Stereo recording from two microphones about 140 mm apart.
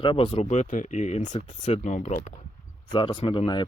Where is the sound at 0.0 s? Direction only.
40° left (ahead or behind).